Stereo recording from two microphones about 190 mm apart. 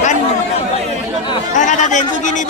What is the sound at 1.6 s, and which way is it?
Speech, 40° left (ahead or behind).